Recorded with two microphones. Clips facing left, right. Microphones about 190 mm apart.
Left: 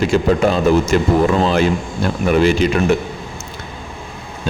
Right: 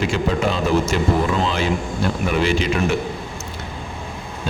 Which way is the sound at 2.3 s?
45° left (ahead or behind).